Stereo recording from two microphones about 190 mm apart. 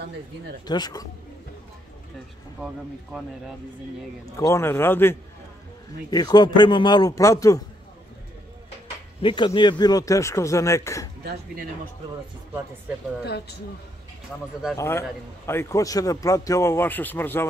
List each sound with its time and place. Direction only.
0.7 s a man's voice: 20° left (ahead or behind)
2.6 s speech: 5° right (ahead or behind)
4.4 s a man's voice: 15° left (ahead or behind)
9.2 s a man's voice: 25° left (ahead or behind)
11.2 s speech: 50° right (ahead or behind)
13.2 s speech: 60° left (ahead or behind)
14.8 s a man's voice: 15° left (ahead or behind)